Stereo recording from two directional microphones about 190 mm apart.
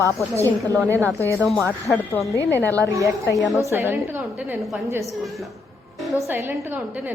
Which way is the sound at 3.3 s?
Centre (ahead or behind).